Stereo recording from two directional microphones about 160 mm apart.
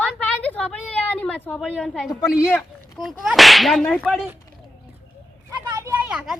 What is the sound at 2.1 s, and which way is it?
Speech, 25° left (ahead or behind).